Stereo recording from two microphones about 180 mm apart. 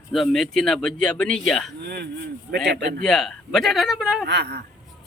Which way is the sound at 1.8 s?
65° right (ahead or behind).